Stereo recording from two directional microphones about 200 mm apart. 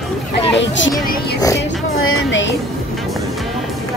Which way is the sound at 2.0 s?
80° left.